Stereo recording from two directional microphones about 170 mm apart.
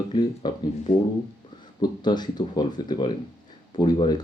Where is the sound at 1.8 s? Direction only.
25° left (ahead or behind).